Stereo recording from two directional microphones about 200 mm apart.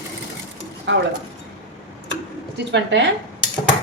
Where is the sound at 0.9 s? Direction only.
65° right (ahead or behind).